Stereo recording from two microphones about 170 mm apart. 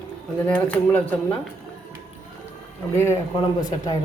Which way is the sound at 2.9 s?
15° left (ahead or behind).